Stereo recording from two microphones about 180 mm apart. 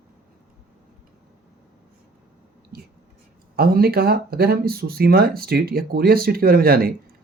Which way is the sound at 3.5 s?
55° right (ahead or behind).